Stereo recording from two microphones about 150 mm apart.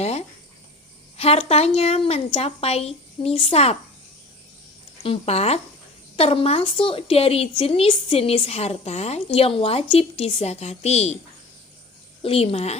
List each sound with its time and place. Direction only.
0.0 s a sound: 45° left (ahead or behind)
1.1 s speech: 40° left (ahead or behind)
5.0 s a woman's voice: 40° left (ahead or behind)
12.2 s a woman's voice: 40° left (ahead or behind)